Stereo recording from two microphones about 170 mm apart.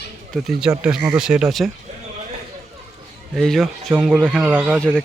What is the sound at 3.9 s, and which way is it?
Speech, 10° right (ahead or behind).